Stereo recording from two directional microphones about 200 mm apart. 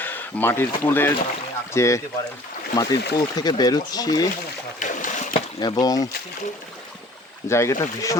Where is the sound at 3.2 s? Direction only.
20° left (ahead or behind).